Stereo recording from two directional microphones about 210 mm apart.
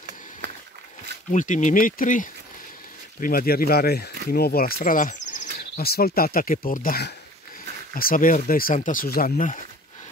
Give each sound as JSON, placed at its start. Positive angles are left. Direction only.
{"t": 1.3, "sound": "speech", "side_deg": 35}